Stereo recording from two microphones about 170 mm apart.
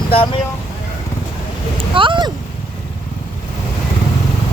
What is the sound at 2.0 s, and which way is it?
Speech, 30° right (ahead or behind).